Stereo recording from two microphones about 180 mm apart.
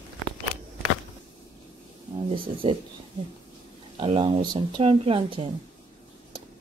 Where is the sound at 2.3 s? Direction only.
30° right (ahead or behind).